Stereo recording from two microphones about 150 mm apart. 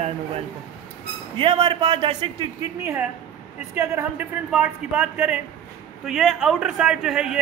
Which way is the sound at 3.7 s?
15° right (ahead or behind).